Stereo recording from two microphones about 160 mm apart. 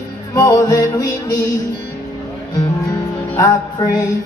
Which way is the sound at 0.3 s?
20° left (ahead or behind).